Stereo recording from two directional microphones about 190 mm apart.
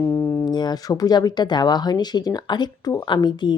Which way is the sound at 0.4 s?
20° left (ahead or behind).